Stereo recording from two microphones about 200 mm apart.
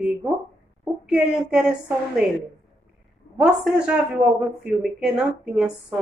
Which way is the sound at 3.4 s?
5° right (ahead or behind).